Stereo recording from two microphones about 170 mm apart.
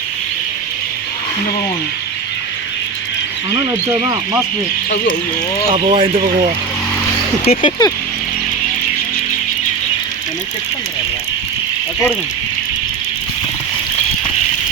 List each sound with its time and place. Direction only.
3.5 s speech: 20° right (ahead or behind)
5.7 s speech: 35° right (ahead or behind)
7.4 s speech: 30° left (ahead or behind)